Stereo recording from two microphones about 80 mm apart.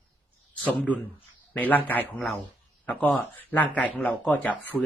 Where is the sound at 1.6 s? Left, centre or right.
Left.